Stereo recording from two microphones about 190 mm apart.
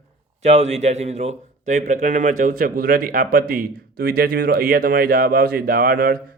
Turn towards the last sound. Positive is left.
turn(degrees=-50)  # may be behind; listen again after turning